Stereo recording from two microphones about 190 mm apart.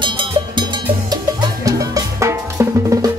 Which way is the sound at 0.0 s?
25° right (ahead or behind).